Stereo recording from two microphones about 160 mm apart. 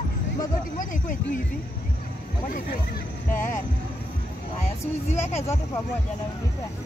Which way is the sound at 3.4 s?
55° left (ahead or behind).